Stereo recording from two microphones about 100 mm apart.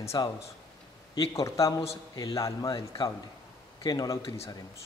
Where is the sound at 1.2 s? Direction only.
35° left (ahead or behind).